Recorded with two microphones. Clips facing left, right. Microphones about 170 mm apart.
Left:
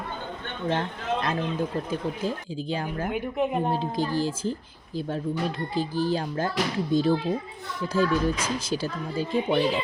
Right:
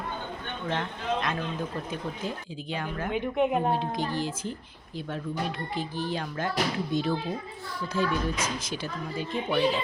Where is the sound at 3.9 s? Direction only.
35° left (ahead or behind).